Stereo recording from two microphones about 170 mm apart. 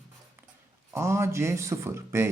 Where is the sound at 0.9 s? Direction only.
15° right (ahead or behind).